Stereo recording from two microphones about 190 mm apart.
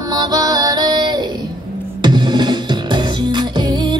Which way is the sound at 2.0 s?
25° right (ahead or behind).